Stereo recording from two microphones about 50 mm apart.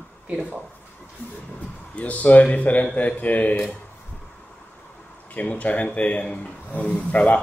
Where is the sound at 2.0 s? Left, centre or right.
Left.